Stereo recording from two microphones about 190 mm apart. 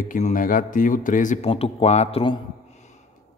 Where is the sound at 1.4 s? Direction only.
30° left (ahead or behind).